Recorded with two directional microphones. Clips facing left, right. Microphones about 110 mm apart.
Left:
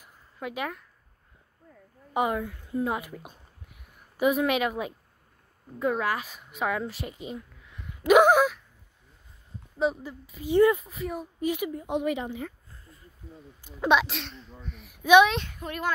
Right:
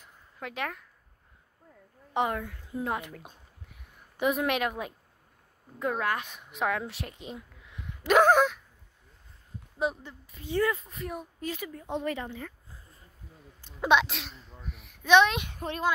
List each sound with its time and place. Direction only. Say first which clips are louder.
0.0 s a sound: left 4 dB; 5° left (ahead or behind)
2.1 s speech: left 2 dB; 5° left (ahead or behind)
8.1 s a woman's voice: left 3 dB; 10° left (ahead or behind)
9.8 s speech: left 4 dB; centre (ahead or behind)
10.5 s a woman's voice: left 7 dB; 15° left (ahead or behind)
10.8 s speech: left 4 dB; centre (ahead or behind)
11.4 s a woman's voice: left 9 dB; 15° left (ahead or behind)
13.7 s speech: left 1 dB; centre (ahead or behind)
15.0 s a woman's voice: left 3 dB; 10° left (ahead or behind)
15.5 s speech: right 2 dB; 30° right (ahead or behind)